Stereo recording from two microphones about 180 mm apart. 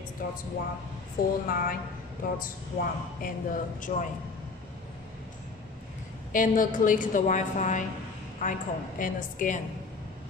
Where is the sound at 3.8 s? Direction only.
45° left (ahead or behind).